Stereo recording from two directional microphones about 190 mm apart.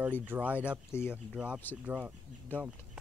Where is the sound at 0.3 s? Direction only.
10° right (ahead or behind).